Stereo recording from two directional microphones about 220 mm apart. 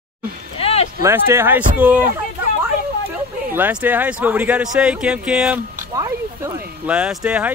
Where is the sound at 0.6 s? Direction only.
25° left (ahead or behind).